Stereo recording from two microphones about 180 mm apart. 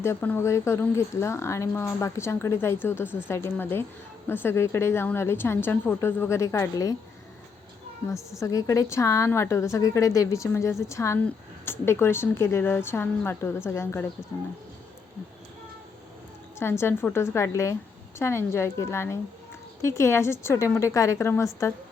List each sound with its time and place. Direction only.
0.0 s speech: 10° left (ahead or behind)
8.4 s speech: 20° left (ahead or behind)
16.6 s speech: 15° left (ahead or behind)